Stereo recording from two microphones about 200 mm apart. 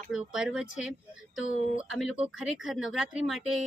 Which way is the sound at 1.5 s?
40° left (ahead or behind).